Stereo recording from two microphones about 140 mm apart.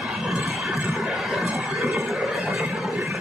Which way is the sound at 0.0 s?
Centre (ahead or behind).